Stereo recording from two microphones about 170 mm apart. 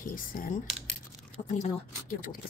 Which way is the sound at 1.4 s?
45° left (ahead or behind).